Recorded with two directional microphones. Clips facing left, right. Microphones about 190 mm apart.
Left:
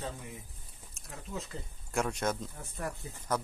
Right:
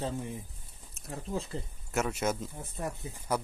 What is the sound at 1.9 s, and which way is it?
Speech, 5° right (ahead or behind).